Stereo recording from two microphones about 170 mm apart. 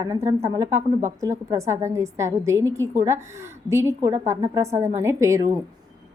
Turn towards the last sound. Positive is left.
turn(degrees=-20)  # may be behind; listen again after turning